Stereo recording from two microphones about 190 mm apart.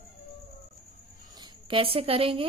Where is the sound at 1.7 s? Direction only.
30° right (ahead or behind).